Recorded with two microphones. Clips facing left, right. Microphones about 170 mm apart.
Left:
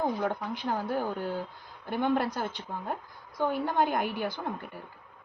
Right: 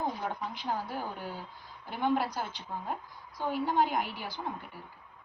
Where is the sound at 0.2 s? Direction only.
55° left (ahead or behind).